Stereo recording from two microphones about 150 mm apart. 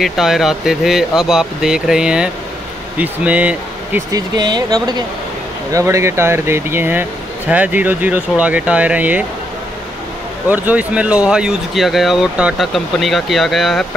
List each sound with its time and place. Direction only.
0.0 s speech: centre (ahead or behind)
4.1 s speech: 25° right (ahead or behind); by 9.2 s 10° right (ahead or behind)
10.5 s speech: 10° right (ahead or behind)